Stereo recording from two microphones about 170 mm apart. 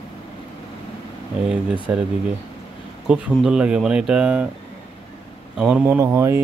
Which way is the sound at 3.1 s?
5° right (ahead or behind).